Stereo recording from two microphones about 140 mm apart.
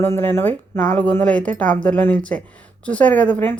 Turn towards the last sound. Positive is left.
turn(degrees=10)  # may be behind; listen again after turning